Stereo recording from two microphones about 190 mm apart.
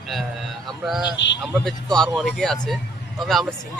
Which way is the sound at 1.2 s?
70° left (ahead or behind).